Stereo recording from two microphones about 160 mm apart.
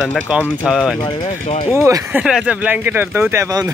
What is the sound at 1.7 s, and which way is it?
Speech, 15° right (ahead or behind).